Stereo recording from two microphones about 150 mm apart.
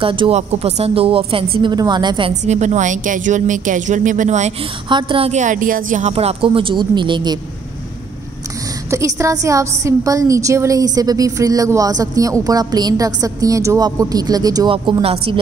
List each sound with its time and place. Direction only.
0.0 s a woman's voice: 35° right (ahead or behind)
0.4 s a woman's voice: 45° right (ahead or behind)
2.4 s speech: 50° right (ahead or behind)
4.8 s a woman's voice: 35° right (ahead or behind)
5.3 s speech: 55° right (ahead or behind); by 7.3 s 30° right (ahead or behind)
8.9 s a woman's voice: 20° right (ahead or behind); by 15.3 s 40° right (ahead or behind)